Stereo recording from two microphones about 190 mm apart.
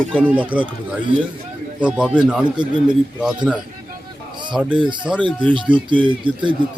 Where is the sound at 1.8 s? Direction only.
5° right (ahead or behind).